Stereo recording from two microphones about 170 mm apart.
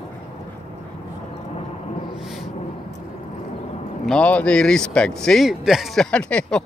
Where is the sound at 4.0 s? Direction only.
5° left (ahead or behind).